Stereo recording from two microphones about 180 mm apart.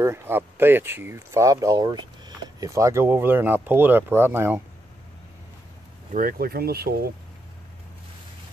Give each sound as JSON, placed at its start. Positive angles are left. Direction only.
{"t": 0.0, "sound": "speech", "side_deg": -15}
{"t": 6.1, "sound": "speech", "side_deg": -55}